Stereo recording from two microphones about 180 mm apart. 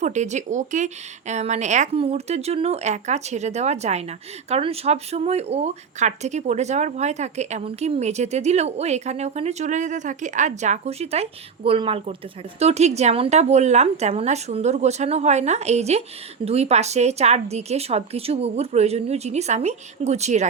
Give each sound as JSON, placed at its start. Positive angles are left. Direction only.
{"t": 0.0, "sound": "a woman's voice", "side_deg": -40}